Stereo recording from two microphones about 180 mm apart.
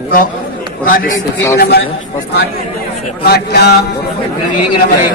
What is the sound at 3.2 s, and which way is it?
Speech, 60° left (ahead or behind).